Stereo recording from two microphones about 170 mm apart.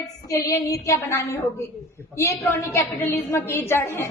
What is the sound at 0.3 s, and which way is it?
A woman's voice, 20° left (ahead or behind).